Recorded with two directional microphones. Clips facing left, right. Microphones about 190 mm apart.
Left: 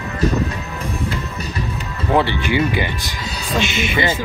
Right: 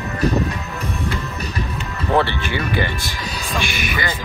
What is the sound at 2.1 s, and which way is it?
Speech, 15° left (ahead or behind).